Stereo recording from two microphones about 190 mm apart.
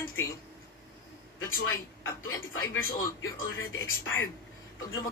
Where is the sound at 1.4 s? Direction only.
90° left.